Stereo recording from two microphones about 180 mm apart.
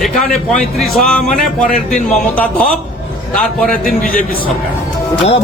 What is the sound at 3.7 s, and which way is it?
Speech, 50° left (ahead or behind).